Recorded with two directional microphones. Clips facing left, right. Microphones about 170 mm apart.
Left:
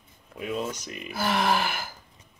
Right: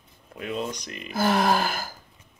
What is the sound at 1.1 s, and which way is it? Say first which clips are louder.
Speech: right 3 dB; 40° right (ahead or behind).